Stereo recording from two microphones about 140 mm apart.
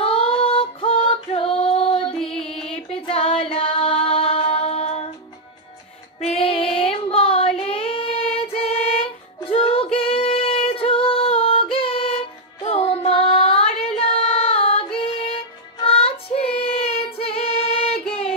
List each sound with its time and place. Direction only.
0.0 s female singing: 40° left (ahead or behind)
6.1 s child singing: 45° left (ahead or behind)
12.6 s music: 45° left (ahead or behind)